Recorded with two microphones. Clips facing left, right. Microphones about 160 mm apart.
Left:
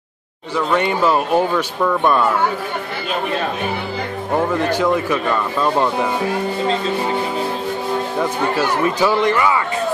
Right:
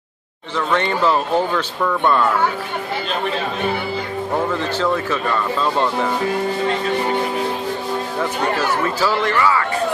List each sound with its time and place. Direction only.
0.6 s speech: 10° left (ahead or behind)
4.5 s speech: 15° left (ahead or behind)
8.2 s speech: 15° left (ahead or behind)